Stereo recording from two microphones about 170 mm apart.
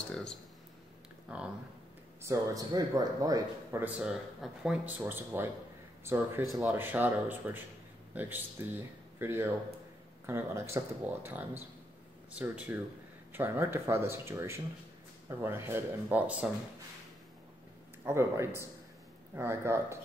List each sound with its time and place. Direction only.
2.2 s a man's voice: 20° right (ahead or behind)
4.0 s speech: 5° right (ahead or behind)
18.0 s speech: 15° right (ahead or behind)